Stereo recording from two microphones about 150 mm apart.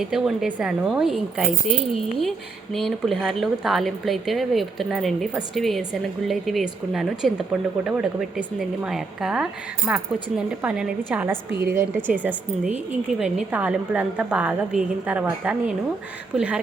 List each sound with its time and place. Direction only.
0.0 s a woman's voice: 5° right (ahead or behind)